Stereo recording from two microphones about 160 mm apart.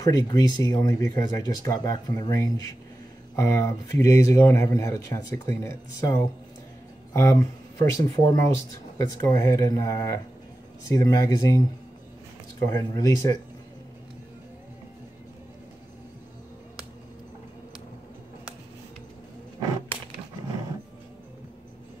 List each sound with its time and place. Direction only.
0.0 s speech: 20° left (ahead or behind)